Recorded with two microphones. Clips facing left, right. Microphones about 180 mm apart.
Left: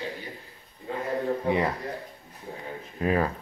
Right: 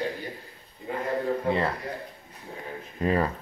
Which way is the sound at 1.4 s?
15° left (ahead or behind).